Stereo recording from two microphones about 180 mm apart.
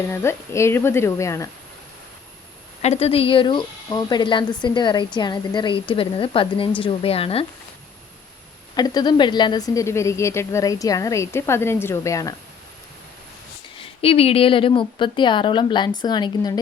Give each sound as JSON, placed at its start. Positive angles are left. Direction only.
{"t": 0.1, "sound": "a woman's voice", "side_deg": 15}
{"t": 2.8, "sound": "speech", "side_deg": 35}
{"t": 8.7, "sound": "a woman's voice", "side_deg": 20}
{"t": 13.7, "sound": "speech", "side_deg": 30}